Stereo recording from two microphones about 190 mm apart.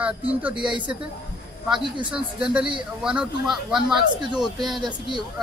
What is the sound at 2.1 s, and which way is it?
Speech, 5° right (ahead or behind).